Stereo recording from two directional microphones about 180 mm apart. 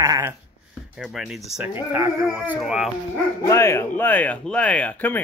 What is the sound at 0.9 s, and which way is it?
Speech, 5° right (ahead or behind).